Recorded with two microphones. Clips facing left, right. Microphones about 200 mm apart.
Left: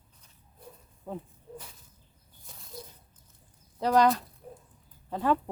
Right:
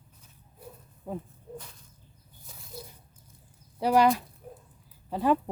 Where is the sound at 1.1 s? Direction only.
10° right (ahead or behind).